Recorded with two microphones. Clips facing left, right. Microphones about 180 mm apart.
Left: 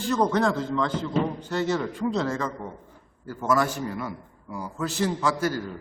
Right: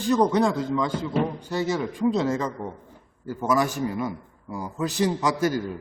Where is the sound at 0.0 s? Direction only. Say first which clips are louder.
Right 2 dB; 15° right (ahead or behind).